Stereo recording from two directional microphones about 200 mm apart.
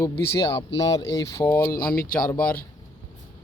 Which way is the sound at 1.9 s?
45° left (ahead or behind).